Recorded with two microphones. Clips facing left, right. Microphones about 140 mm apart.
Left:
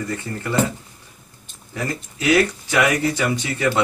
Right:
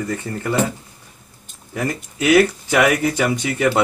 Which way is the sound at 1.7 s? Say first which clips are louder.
Right 4 dB; 20° right (ahead or behind).